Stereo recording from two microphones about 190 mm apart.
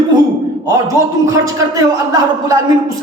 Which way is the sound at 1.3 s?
15° right (ahead or behind).